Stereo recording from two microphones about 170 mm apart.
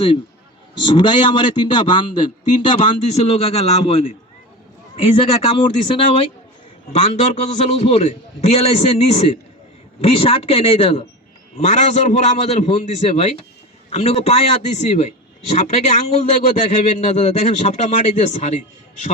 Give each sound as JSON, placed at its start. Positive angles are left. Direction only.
{"t": 0.9, "sound": "a man's voice", "side_deg": 30}